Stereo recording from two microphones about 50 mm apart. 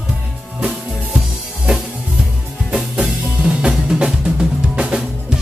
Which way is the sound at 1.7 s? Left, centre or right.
Centre.